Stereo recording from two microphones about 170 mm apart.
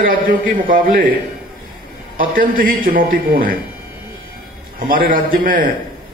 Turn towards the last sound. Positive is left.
turn(degrees=-55)  # may be behind; listen again after turning